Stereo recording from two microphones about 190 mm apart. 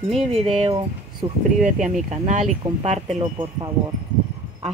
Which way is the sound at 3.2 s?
25° right (ahead or behind).